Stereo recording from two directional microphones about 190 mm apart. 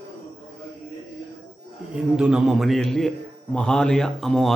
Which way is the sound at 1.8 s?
5° right (ahead or behind).